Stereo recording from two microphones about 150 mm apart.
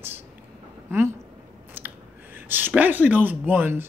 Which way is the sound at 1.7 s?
15° right (ahead or behind).